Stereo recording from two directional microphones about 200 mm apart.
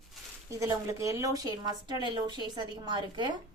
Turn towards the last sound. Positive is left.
turn(degrees=-20)  # may be behind; listen again after turning